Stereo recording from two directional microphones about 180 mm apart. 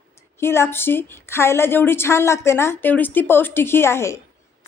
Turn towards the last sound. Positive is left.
turn(degrees=15)  # may be behind; listen again after turning